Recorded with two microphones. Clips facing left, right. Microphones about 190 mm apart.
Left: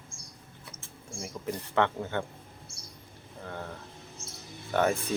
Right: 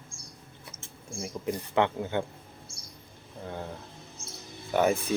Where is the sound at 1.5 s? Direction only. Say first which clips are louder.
Right 1 dB; 15° right (ahead or behind).